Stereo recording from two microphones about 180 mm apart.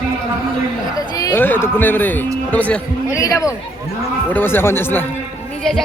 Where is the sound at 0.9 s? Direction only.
20° left (ahead or behind).